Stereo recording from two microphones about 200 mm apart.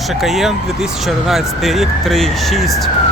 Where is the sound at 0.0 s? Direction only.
Centre (ahead or behind).